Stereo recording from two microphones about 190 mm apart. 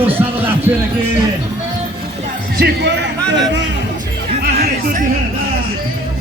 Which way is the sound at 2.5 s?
60° right (ahead or behind).